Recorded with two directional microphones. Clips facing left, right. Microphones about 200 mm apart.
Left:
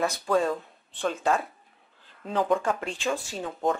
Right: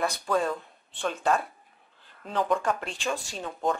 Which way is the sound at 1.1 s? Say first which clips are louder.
Right 2 dB; 15° left (ahead or behind).